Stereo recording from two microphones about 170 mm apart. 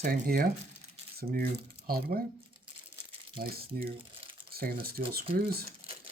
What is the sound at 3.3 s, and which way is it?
Speech, 60° right (ahead or behind).